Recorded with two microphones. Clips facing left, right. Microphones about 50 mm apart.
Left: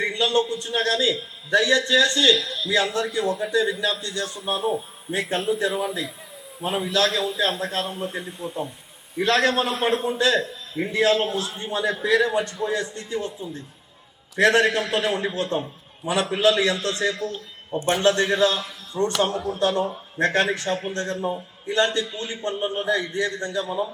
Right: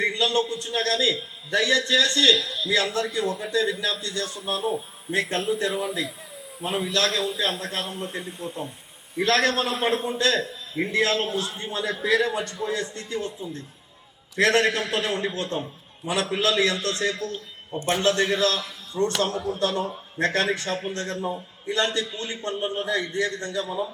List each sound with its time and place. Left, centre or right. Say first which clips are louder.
0.0 s a sound: left 1 dB; centre
0.4 s a man's voice: left 2 dB; centre
1.5 s a man's voice: left 3 dB; left
2.3 s a man's voice: left 1 dB; centre
4.5 s a man's voice: left 2 dB; centre
11.7 s a man's voice: left 5 dB; centre
11.9 s a man's voice: left 2 dB; centre
21.8 s a man's voice: left 3 dB; left